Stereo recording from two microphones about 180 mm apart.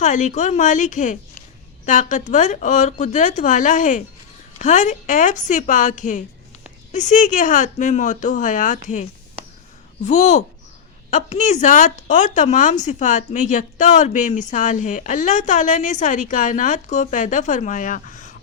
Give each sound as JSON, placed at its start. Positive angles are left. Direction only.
{"t": 0.0, "sound": "a woman's voice", "side_deg": 40}
{"t": 10.1, "sound": "a woman's voice", "side_deg": 40}